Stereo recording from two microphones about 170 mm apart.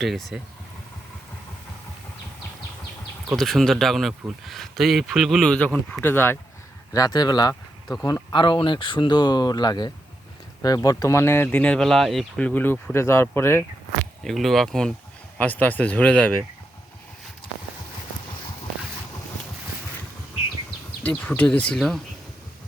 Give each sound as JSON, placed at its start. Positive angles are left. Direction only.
{"t": 0.0, "sound": "speech", "side_deg": 0}
{"t": 3.3, "sound": "speech", "side_deg": 0}
{"t": 14.3, "sound": "speech", "side_deg": 0}
{"t": 21.0, "sound": "speech", "side_deg": 10}